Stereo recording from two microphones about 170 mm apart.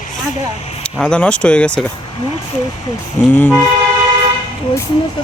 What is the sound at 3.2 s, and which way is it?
Speech, 10° left (ahead or behind).